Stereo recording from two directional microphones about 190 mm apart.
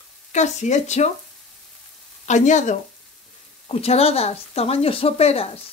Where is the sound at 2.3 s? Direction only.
40° left (ahead or behind).